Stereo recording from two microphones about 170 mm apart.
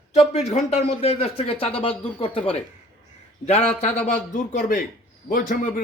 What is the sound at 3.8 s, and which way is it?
Speech, 40° left (ahead or behind).